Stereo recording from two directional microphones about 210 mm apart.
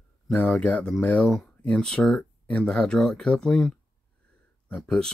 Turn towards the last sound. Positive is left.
turn(degrees=5)  # may be behind; listen again after turning